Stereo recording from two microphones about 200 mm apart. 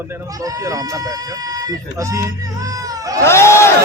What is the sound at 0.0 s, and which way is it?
Speech, 10° right (ahead or behind).